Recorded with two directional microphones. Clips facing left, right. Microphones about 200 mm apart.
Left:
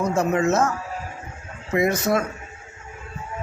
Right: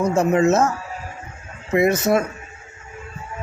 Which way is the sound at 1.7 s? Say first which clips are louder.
Right 3 dB; 25° right (ahead or behind).